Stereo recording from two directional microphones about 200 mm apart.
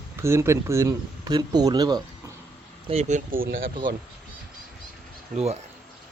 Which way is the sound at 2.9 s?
35° right (ahead or behind).